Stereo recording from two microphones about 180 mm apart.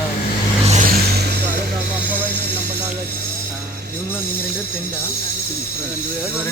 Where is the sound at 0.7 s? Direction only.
45° right (ahead or behind).